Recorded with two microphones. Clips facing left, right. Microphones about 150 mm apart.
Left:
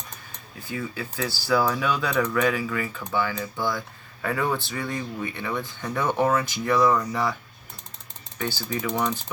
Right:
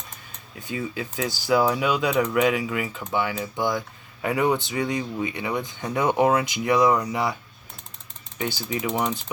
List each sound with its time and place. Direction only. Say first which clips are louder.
0.6 s speech: right 2 dB; 20° right (ahead or behind)
8.4 s speech: right 1 dB; 15° right (ahead or behind)